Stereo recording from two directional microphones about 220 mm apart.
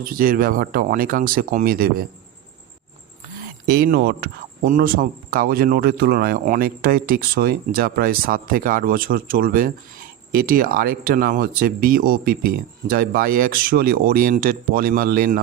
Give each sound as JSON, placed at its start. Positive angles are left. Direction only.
{"t": 0.0, "sound": "speech", "side_deg": -40}
{"t": 3.7, "sound": "speech", "side_deg": -45}